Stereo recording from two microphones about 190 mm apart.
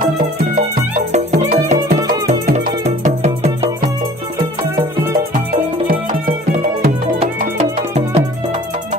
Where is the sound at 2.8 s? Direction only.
35° right (ahead or behind).